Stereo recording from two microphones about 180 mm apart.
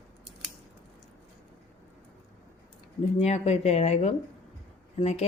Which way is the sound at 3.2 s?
35° left (ahead or behind).